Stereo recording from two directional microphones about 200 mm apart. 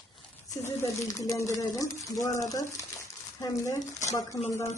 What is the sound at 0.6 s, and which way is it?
Speech, 15° left (ahead or behind).